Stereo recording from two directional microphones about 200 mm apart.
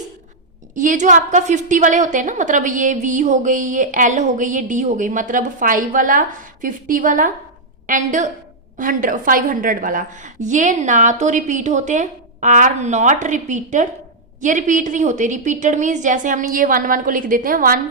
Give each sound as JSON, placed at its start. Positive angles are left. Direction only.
{"t": 0.8, "sound": "a woman's voice", "side_deg": -40}